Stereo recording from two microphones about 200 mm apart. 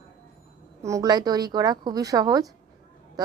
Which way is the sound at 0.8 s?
15° right (ahead or behind).